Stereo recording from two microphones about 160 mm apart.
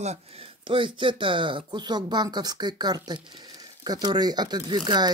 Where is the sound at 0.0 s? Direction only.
40° right (ahead or behind).